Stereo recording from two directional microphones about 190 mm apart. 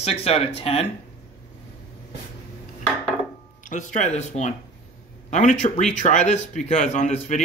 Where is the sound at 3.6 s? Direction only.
40° left (ahead or behind).